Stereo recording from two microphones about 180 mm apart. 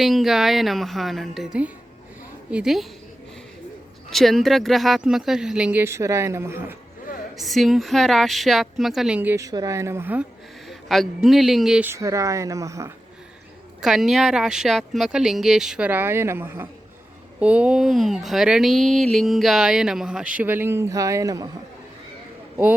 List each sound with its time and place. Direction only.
0.0 s speech: centre (ahead or behind)
2.5 s speech: 5° right (ahead or behind)
4.1 s speech: centre (ahead or behind)
7.3 s speech: centre (ahead or behind)
10.7 s speech: centre (ahead or behind)
11.9 s a woman's voice: 15° right (ahead or behind)
13.8 s speech: centre (ahead or behind); by 21.5 s 20° right (ahead or behind)